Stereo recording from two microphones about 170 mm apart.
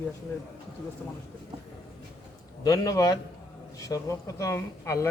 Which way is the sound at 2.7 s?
20° left (ahead or behind).